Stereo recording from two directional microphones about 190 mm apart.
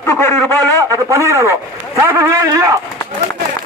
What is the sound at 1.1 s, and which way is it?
A man's voice, 15° right (ahead or behind).